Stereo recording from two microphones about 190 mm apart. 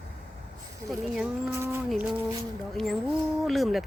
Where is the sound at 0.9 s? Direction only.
Centre (ahead or behind).